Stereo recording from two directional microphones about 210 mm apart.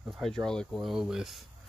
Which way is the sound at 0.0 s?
Centre (ahead or behind).